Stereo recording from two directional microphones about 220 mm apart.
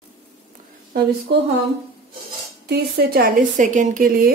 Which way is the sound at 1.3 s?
50° right (ahead or behind).